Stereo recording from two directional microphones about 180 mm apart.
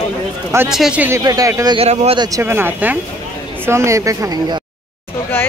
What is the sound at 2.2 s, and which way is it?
Speech, 15° right (ahead or behind).